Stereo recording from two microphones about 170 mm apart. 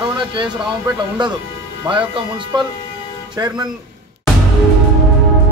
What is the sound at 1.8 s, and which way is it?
Speech, 30° right (ahead or behind).